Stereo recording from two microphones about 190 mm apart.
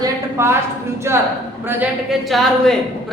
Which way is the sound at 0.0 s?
15° right (ahead or behind).